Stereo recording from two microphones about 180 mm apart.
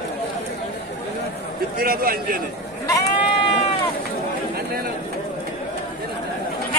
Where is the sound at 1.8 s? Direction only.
55° right (ahead or behind).